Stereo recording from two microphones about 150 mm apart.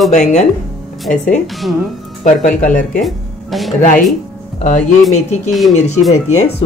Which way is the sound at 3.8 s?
60° left (ahead or behind).